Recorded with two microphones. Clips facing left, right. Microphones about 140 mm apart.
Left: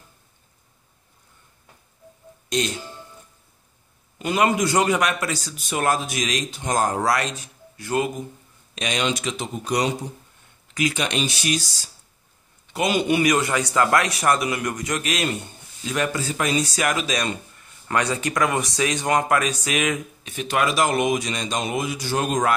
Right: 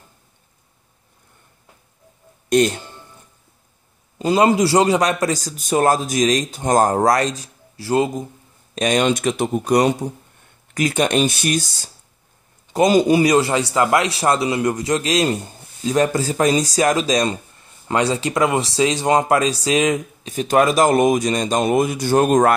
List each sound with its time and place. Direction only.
2.5 s a man's voice: 55° right (ahead or behind)
4.2 s a man's voice: 30° right (ahead or behind)
8.7 s speech: 45° right (ahead or behind)
12.7 s a man's voice: 40° right (ahead or behind)